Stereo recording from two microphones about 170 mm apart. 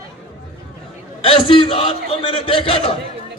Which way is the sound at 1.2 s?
30° left (ahead or behind).